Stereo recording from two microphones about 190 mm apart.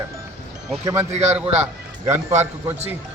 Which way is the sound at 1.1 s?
35° right (ahead or behind).